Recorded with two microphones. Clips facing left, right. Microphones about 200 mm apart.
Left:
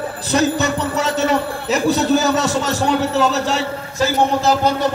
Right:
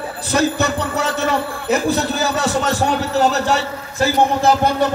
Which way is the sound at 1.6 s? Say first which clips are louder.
Left 1 dB; 55° right (ahead or behind).